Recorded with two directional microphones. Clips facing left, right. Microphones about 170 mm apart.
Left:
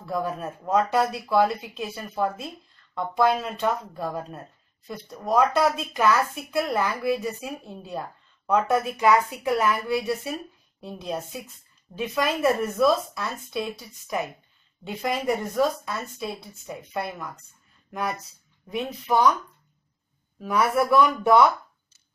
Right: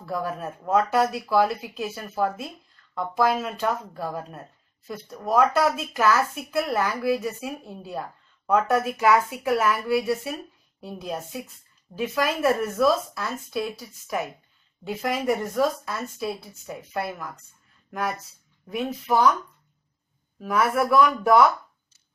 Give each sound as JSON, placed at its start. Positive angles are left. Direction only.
{"t": 0.0, "sound": "a woman's voice", "side_deg": 0}
{"t": 18.7, "sound": "a woman's voice", "side_deg": 0}
{"t": 20.3, "sound": "a woman's voice", "side_deg": 0}